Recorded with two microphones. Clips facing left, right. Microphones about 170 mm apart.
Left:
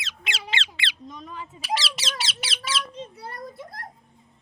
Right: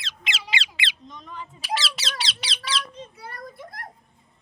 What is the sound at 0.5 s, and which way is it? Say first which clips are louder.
Squeak: right 1 dB; 10° right (ahead or behind).